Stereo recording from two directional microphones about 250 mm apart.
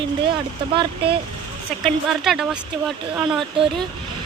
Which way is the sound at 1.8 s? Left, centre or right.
Centre.